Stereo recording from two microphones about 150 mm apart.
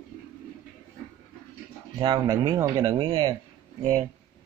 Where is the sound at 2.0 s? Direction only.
25° right (ahead or behind).